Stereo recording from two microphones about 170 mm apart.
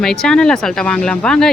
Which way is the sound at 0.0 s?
5° left (ahead or behind).